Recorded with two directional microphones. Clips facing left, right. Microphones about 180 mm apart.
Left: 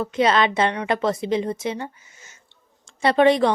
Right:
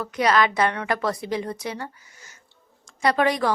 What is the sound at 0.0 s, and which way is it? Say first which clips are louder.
Speech: left 2 dB; 25° left (ahead or behind).